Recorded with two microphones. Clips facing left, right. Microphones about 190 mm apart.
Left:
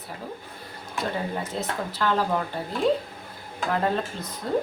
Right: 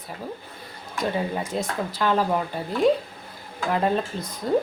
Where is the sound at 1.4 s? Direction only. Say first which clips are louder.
Right 2 dB; 15° right (ahead or behind).